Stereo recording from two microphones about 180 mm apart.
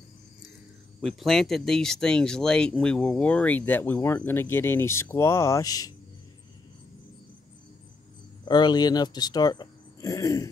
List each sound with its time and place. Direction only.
1.0 s speech: centre (ahead or behind); by 5.9 s 20° left (ahead or behind)
8.5 s speech: 25° left (ahead or behind)